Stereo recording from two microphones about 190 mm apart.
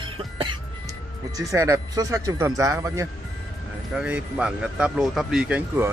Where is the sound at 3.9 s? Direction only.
5° right (ahead or behind).